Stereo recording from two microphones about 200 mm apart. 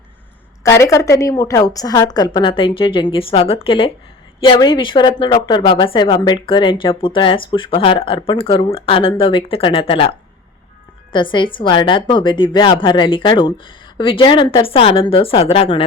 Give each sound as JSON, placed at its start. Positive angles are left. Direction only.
{"t": 0.6, "sound": "a woman's voice", "side_deg": 15}